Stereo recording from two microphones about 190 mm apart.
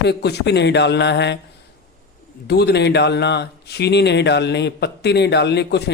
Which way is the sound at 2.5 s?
60° left (ahead or behind).